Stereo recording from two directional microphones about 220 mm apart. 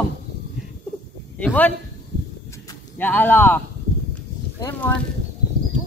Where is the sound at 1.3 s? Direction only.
5° left (ahead or behind).